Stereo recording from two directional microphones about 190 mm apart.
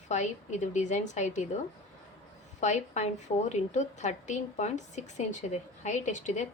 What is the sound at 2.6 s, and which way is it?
A woman's voice, 40° left (ahead or behind).